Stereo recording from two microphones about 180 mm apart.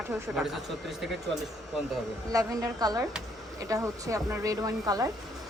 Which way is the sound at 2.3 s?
20° right (ahead or behind).